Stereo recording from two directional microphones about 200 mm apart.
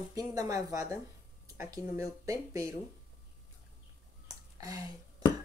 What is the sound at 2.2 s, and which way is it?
Speech, 15° right (ahead or behind).